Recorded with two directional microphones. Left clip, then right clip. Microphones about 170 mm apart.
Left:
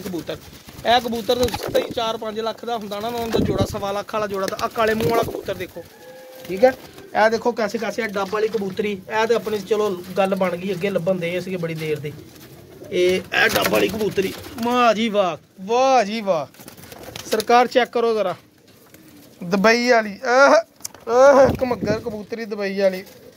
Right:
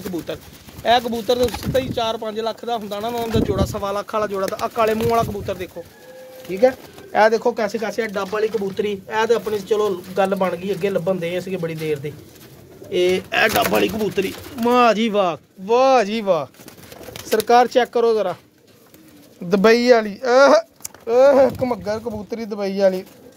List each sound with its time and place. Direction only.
0.3 s speech: 10° right (ahead or behind)
7.1 s speech: 35° right (ahead or behind)
7.3 s speech: 15° right (ahead or behind)
13.3 s speech: 35° right (ahead or behind)
17.5 s speech: 10° right (ahead or behind)
19.5 s speech: 60° right (ahead or behind); by 20.6 s 80° right
21.1 s speech: 15° right (ahead or behind)